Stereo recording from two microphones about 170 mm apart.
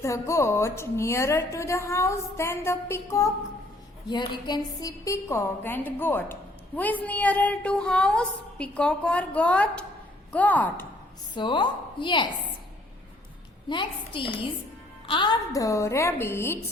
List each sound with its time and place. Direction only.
0.0 s a woman's voice: 15° left (ahead or behind)
11.3 s speech: 25° left (ahead or behind)
13.7 s a woman's voice: 30° left (ahead or behind)